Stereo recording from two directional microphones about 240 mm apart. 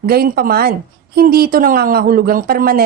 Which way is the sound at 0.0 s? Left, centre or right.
Right.